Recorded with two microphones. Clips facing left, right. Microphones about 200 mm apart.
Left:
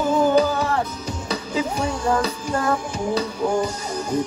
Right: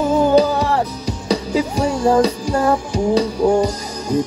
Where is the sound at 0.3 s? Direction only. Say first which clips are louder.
Right 4 dB; 35° right (ahead or behind).